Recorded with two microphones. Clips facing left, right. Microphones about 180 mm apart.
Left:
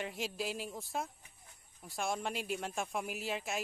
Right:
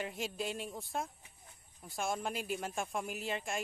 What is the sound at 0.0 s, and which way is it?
Speech, centre (ahead or behind).